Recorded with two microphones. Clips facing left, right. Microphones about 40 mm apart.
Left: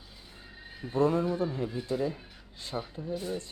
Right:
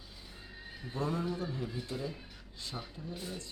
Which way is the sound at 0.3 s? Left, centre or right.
Centre.